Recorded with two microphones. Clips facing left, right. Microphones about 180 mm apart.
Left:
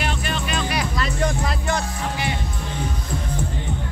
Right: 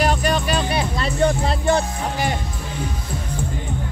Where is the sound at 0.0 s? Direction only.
40° right (ahead or behind).